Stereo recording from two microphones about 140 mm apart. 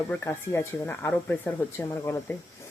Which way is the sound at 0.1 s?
15° left (ahead or behind).